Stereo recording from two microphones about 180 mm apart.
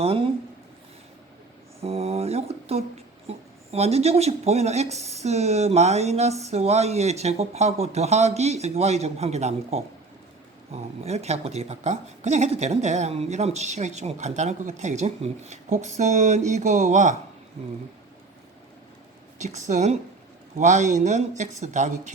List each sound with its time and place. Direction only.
0.0 s a woman's voice: 30° right (ahead or behind)
1.8 s a woman's voice: 35° right (ahead or behind)
19.4 s a woman's voice: 40° right (ahead or behind)